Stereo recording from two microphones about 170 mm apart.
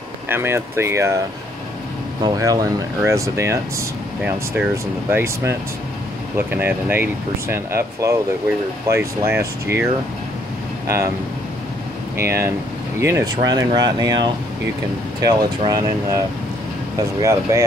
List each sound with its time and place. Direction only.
0.3 s speech: 15° right (ahead or behind)
2.2 s speech: 20° right (ahead or behind)
5.1 s speech: 15° right (ahead or behind)
12.2 s speech: 15° right (ahead or behind)
17.2 s speech: 20° right (ahead or behind)